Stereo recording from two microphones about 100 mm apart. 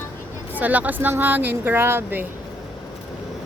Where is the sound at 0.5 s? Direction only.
15° right (ahead or behind).